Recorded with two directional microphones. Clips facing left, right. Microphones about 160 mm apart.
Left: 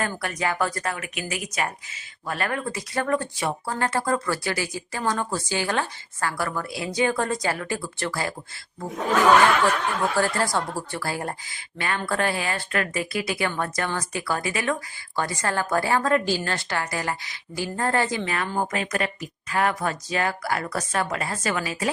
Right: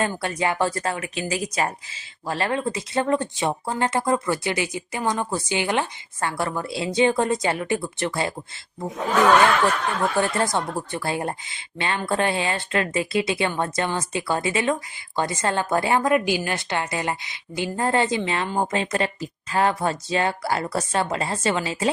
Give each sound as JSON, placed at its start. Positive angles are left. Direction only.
{"t": 0.0, "sound": "speech", "side_deg": -25}
{"t": 10.2, "sound": "speech", "side_deg": -20}